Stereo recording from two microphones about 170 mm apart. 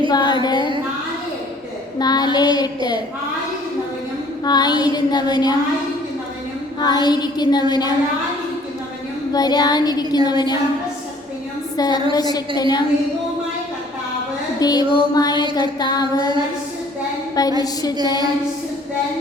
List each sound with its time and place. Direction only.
0.1 s a sound: 25° left (ahead or behind)
2.0 s child singing: 25° left (ahead or behind)
4.4 s child singing: 25° left (ahead or behind)
6.8 s child singing: 25° left (ahead or behind)
9.3 s child singing: 25° left (ahead or behind)
11.8 s child singing: 25° left (ahead or behind)
14.6 s a sound: 25° left (ahead or behind)
15.1 s child singing: 25° left (ahead or behind)
18.0 s child singing: 25° left (ahead or behind)